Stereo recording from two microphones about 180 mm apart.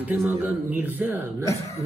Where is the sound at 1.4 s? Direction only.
15° left (ahead or behind).